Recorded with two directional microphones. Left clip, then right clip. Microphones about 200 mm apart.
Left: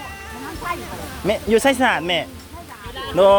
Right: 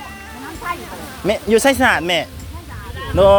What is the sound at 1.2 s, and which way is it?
Speech, 15° right (ahead or behind).